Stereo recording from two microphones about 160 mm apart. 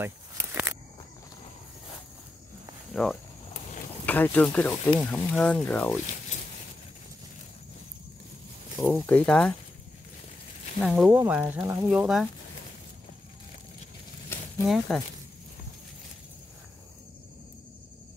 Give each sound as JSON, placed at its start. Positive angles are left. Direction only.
{"t": 0.0, "sound": "walk", "side_deg": -15}
{"t": 2.9, "sound": "speech", "side_deg": 5}
{"t": 8.8, "sound": "speech", "side_deg": 10}
{"t": 10.8, "sound": "speech", "side_deg": 0}
{"t": 11.2, "sound": "speech", "side_deg": -10}
{"t": 11.9, "sound": "speech", "side_deg": -5}
{"t": 14.7, "sound": "speech", "side_deg": 0}